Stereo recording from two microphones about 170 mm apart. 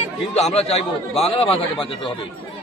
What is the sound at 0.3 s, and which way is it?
A man's voice, 40° left (ahead or behind).